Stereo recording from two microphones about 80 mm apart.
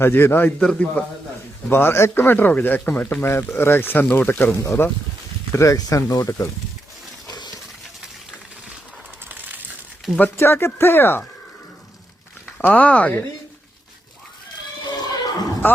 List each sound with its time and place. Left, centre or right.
0.0 s speech: left
0.6 s a man's voice: centre
1.7 s speech: left
4.6 s speech: left
7.3 s a sound: left
10.2 s speech: left
12.6 s speech: centre
15.0 s a sound: left